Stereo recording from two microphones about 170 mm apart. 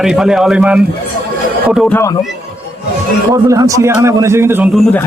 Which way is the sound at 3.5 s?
20° right (ahead or behind).